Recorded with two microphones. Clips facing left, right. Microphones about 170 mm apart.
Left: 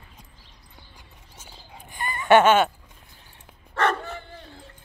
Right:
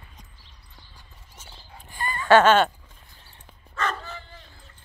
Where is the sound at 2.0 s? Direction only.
20° left (ahead or behind).